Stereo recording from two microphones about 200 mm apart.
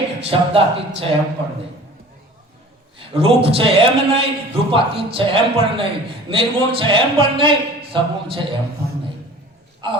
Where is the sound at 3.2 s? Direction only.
30° right (ahead or behind).